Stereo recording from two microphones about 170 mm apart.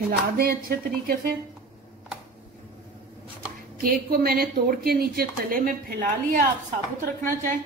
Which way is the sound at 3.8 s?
60° right (ahead or behind).